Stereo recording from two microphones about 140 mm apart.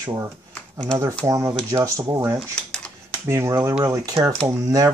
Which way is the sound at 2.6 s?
5° left (ahead or behind).